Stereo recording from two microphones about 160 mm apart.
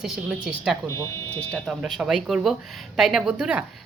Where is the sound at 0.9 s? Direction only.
15° left (ahead or behind).